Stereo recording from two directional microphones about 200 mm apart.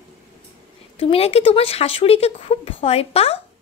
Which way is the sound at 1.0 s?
30° left (ahead or behind).